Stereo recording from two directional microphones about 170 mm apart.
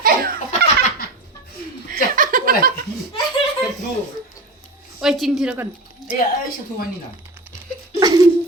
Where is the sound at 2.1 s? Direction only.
55° right (ahead or behind).